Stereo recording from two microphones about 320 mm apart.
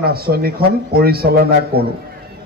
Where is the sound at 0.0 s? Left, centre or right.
Right.